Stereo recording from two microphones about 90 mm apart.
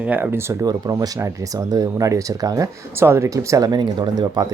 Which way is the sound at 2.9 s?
30° right (ahead or behind).